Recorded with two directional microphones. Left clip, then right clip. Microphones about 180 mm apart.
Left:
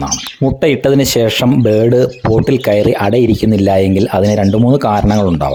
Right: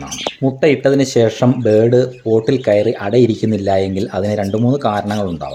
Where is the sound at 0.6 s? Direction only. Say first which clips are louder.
Left 1 dB; 60° left (ahead or behind).